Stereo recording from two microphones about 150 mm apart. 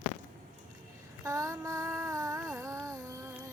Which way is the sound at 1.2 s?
20° right (ahead or behind).